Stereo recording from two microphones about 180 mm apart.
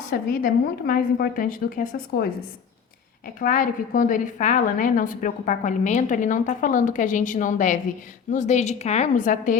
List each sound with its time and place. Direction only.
0.1 s a woman's voice: 55° left (ahead or behind)
3.4 s a woman's voice: 50° left (ahead or behind)